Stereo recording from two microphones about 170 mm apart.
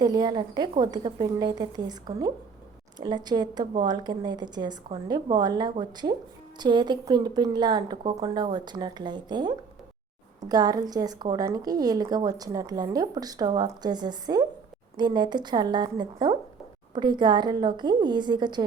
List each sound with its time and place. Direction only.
0.0 s a woman's voice: 25° right (ahead or behind)